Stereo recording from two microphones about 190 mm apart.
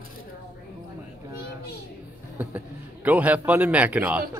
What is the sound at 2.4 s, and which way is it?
A man's voice, 10° right (ahead or behind).